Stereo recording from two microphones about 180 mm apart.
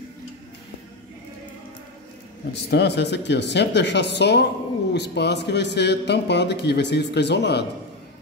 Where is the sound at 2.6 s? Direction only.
70° left (ahead or behind).